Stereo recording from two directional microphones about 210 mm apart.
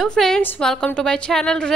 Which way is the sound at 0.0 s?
Centre (ahead or behind).